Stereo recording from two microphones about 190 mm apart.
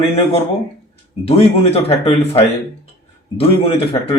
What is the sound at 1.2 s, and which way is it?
Speech, 30° left (ahead or behind).